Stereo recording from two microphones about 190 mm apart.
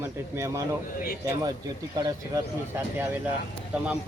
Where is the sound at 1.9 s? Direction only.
25° right (ahead or behind).